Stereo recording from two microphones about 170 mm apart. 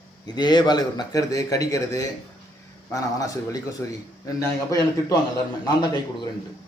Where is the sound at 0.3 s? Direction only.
25° left (ahead or behind).